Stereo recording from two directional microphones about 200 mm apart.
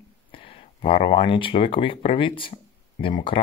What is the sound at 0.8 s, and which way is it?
Speech, 25° left (ahead or behind).